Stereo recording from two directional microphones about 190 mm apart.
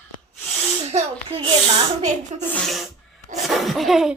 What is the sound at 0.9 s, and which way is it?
Speech, 35° right (ahead or behind).